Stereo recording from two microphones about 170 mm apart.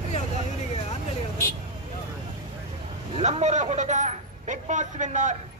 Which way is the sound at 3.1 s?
40° right (ahead or behind).